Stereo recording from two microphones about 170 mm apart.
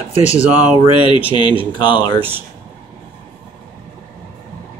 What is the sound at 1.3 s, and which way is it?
Speech, 30° left (ahead or behind).